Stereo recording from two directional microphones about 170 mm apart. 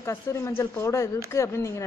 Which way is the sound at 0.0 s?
15° left (ahead or behind).